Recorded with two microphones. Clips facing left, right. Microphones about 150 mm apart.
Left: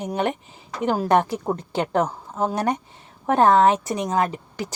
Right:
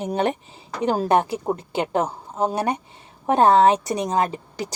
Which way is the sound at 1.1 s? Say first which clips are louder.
Even; 10° right (ahead or behind).